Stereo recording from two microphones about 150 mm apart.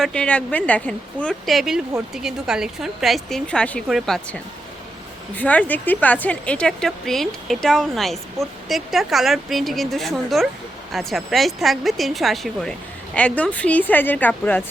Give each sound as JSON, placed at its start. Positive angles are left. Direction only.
{"t": 0.0, "sound": "a woman's voice", "side_deg": 5}
{"t": 5.4, "sound": "a woman's voice", "side_deg": 10}